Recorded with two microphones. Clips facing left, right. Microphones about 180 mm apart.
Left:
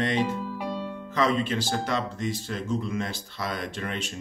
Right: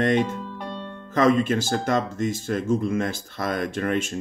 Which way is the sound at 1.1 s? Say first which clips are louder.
Right 6 dB; 50° right (ahead or behind).